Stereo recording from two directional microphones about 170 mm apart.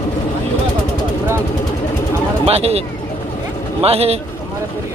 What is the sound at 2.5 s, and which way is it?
A man's voice, 35° right (ahead or behind).